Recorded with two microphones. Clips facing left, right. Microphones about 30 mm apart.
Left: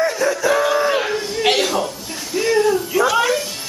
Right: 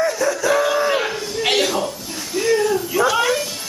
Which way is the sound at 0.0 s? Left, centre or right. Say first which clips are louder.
Left 1 dB; centre.